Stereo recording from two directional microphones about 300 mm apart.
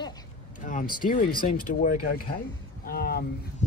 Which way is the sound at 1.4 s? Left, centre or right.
Left.